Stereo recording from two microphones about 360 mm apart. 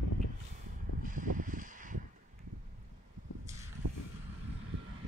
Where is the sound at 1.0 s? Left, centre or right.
Right.